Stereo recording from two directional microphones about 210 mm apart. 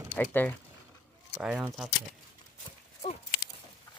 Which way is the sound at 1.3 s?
5° right (ahead or behind).